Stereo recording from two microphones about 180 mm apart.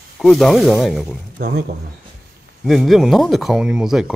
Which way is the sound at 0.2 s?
Centre (ahead or behind).